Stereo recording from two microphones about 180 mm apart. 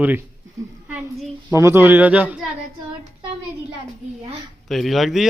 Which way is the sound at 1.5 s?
15° right (ahead or behind).